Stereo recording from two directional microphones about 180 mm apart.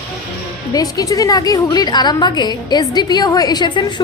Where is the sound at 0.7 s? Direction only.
20° left (ahead or behind).